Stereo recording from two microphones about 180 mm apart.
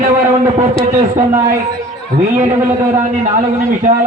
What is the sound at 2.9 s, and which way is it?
A man's voice, 40° right (ahead or behind).